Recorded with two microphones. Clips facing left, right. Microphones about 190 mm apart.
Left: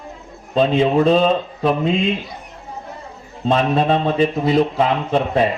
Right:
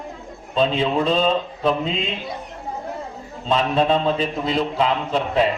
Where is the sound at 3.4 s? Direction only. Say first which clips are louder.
Left 2 dB; 50° left (ahead or behind).